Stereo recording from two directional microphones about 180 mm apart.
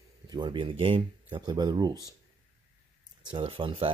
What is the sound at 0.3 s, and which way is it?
Speech, 25° right (ahead or behind).